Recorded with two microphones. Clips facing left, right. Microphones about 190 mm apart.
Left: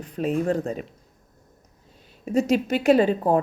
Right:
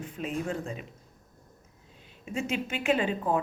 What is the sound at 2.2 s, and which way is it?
Speech, 40° left (ahead or behind).